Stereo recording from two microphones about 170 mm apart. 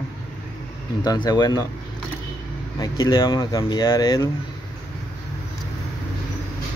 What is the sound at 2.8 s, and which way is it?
Speech, 25° left (ahead or behind).